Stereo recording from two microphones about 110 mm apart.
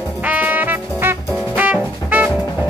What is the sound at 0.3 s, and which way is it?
Music, 15° right (ahead or behind).